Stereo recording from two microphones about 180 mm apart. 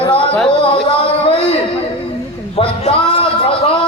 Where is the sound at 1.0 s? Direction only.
30° left (ahead or behind).